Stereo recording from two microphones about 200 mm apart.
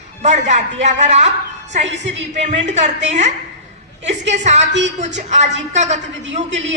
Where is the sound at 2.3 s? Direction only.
35° right (ahead or behind).